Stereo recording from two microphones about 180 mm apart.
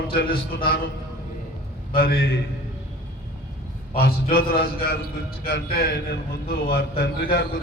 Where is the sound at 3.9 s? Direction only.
55° left (ahead or behind).